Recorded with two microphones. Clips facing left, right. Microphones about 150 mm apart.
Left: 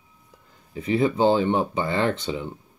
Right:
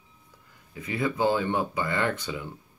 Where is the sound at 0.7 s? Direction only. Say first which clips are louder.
Left 7 dB; 25° left (ahead or behind).